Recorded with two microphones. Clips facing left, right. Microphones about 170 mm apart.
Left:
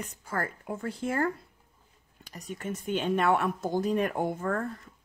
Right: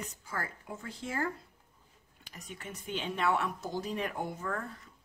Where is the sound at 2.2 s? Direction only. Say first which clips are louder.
Left 9 dB; 40° left (ahead or behind).